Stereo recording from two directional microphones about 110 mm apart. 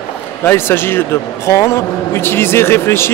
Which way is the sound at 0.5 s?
20° left (ahead or behind).